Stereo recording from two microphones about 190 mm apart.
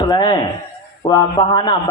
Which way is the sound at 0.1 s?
25° left (ahead or behind).